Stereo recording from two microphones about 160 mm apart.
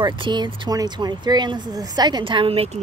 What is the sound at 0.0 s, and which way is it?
Speech, 30° right (ahead or behind).